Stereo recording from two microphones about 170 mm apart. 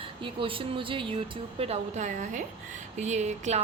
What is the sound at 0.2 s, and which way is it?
A woman's voice, 30° right (ahead or behind).